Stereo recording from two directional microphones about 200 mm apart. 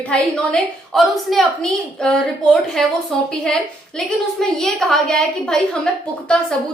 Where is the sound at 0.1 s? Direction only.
Centre (ahead or behind).